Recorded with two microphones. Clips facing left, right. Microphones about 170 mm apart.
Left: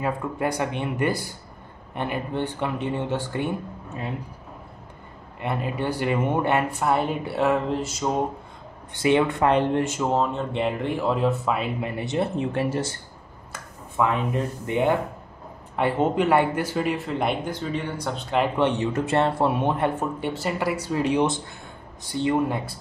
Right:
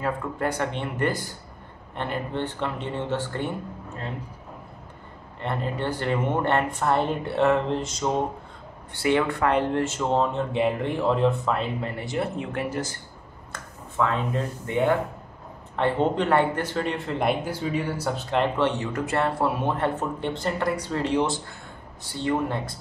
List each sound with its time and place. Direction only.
0.0 s speech: 15° left (ahead or behind)
5.4 s speech: 10° left (ahead or behind)
8.9 s speech: 20° left (ahead or behind)
13.5 s speech: 15° left (ahead or behind)
18.6 s speech: 20° left (ahead or behind)